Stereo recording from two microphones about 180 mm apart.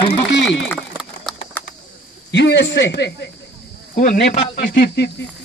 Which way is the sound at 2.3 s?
75° left (ahead or behind).